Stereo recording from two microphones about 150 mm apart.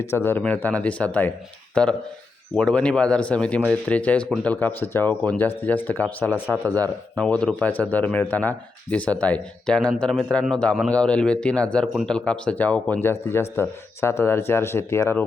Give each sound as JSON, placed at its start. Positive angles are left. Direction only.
{"t": 0.0, "sound": "speech", "side_deg": 15}